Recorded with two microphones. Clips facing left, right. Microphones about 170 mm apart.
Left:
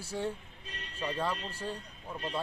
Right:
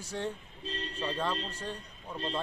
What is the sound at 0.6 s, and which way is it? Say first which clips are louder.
Speech: right 9 dB; 30° right (ahead or behind).